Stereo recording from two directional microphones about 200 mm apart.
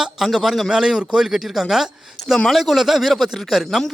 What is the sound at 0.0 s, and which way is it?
Speech, centre (ahead or behind).